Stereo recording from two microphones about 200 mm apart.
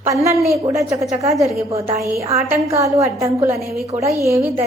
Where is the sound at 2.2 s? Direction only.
35° right (ahead or behind).